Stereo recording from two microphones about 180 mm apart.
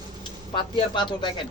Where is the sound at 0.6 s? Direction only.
25° left (ahead or behind).